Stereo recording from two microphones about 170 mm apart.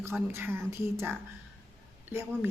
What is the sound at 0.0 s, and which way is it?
A woman's voice, 15° right (ahead or behind).